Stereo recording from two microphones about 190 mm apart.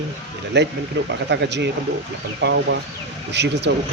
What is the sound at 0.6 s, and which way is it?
Speech, 65° right (ahead or behind).